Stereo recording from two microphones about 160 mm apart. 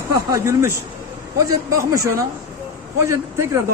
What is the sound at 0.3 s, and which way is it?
A man's voice, 20° right (ahead or behind).